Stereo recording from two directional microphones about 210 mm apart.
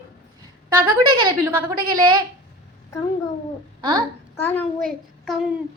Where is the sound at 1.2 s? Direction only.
25° right (ahead or behind).